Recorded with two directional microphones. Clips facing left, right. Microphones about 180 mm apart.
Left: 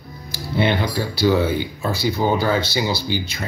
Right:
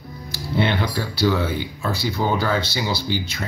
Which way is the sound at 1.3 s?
10° left (ahead or behind).